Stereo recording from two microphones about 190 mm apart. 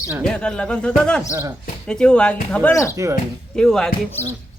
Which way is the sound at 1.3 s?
15° right (ahead or behind).